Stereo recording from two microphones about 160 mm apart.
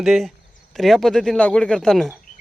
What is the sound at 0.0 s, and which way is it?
Speech, 5° right (ahead or behind).